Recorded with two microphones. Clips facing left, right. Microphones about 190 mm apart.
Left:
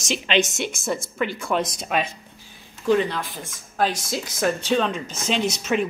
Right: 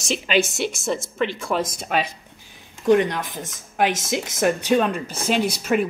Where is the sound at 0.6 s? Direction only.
Centre (ahead or behind).